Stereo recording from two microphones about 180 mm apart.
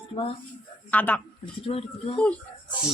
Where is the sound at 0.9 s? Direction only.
10° left (ahead or behind).